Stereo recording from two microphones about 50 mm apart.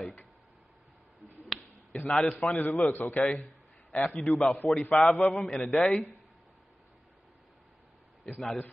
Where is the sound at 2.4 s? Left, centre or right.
Left.